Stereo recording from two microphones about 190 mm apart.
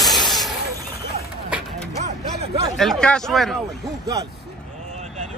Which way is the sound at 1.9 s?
35° right (ahead or behind).